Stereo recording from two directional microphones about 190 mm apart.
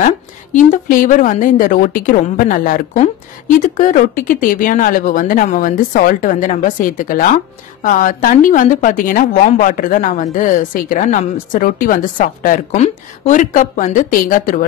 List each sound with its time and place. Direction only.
0.0 s a woman's voice: 45° left (ahead or behind)